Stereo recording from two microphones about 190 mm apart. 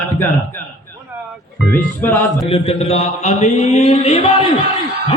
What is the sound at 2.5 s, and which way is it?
Mantra, 30° left (ahead or behind).